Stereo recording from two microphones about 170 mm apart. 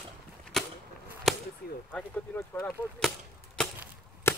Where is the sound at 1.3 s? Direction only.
Centre (ahead or behind).